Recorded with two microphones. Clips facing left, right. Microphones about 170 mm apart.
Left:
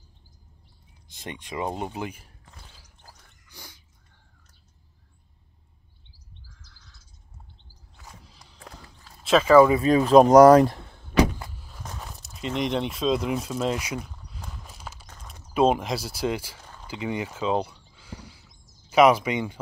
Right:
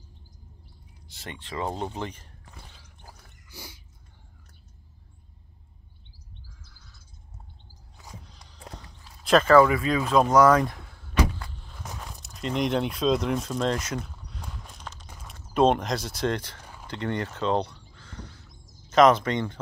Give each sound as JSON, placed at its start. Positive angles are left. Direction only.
{"t": 1.0, "sound": "speech", "side_deg": 20}
{"t": 3.4, "sound": "a sound", "side_deg": -10}
{"t": 6.7, "sound": "crow", "side_deg": -5}
{"t": 8.3, "sound": "horse", "side_deg": 5}
{"t": 9.2, "sound": "speech", "side_deg": 5}
{"t": 9.6, "sound": "speech", "side_deg": 25}
{"t": 9.8, "sound": "speech", "side_deg": 35}
{"t": 11.1, "sound": "vehicle", "side_deg": 15}
{"t": 15.0, "sound": "a sound", "side_deg": -10}
{"t": 15.5, "sound": "speech", "side_deg": 5}
{"t": 16.8, "sound": "a sound", "side_deg": 5}